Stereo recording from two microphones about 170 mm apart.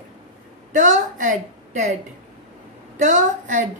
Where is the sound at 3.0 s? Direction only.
50° right (ahead or behind).